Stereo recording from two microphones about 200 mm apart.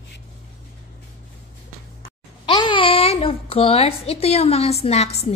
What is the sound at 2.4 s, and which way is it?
A child's voice, 25° left (ahead or behind).